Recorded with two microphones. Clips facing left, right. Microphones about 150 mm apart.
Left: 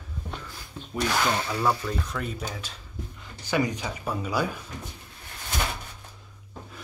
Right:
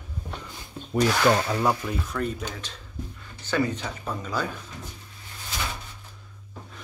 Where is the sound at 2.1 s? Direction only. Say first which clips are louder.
Right 3 dB; 5° left (ahead or behind).